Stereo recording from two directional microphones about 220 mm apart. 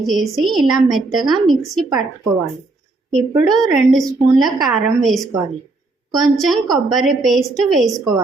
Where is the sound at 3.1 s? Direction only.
Centre (ahead or behind).